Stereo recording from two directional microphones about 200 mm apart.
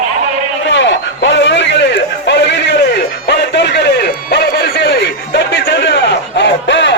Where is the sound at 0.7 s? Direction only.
65° left (ahead or behind).